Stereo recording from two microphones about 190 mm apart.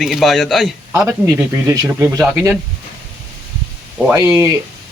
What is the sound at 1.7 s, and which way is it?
Speech, 15° right (ahead or behind).